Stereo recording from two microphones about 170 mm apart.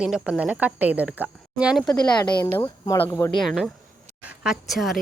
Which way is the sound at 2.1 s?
25° left (ahead or behind).